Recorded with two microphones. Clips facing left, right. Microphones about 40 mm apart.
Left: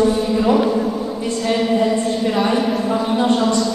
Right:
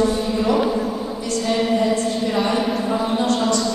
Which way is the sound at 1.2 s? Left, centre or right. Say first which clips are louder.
Left 2 dB; left.